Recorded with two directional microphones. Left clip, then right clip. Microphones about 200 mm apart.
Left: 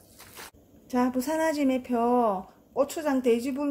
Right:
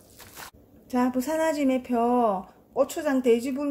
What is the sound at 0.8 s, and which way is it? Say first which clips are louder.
Speech: right 1 dB; 5° left (ahead or behind).